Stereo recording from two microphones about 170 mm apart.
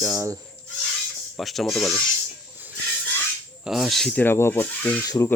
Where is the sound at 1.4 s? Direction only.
Centre (ahead or behind).